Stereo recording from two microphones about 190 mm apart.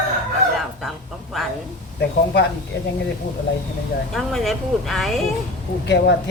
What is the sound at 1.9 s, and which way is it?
Speech, 60° left (ahead or behind).